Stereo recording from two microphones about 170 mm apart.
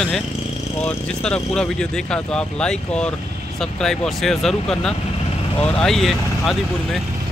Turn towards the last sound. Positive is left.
turn(degrees=0)  # may be behind; listen again after turning